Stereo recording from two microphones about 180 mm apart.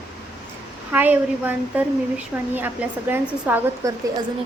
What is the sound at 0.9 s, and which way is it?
A woman's voice, 10° right (ahead or behind).